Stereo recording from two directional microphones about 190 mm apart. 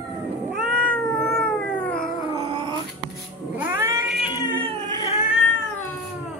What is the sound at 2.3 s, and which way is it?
Dog, 30° right (ahead or behind).